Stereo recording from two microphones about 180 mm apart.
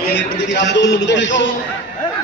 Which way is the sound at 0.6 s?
80° left.